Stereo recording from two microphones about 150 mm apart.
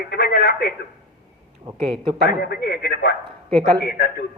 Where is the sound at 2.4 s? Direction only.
90° left.